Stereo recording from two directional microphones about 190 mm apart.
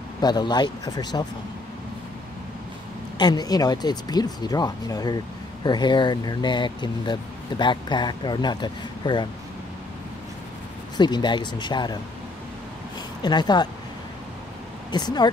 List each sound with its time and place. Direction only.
0.2 s speech: 20° left (ahead or behind)
3.2 s speech: 20° left (ahead or behind)
11.0 s speech: 25° left (ahead or behind)
13.2 s speech: 20° left (ahead or behind)
14.9 s speech: 20° left (ahead or behind)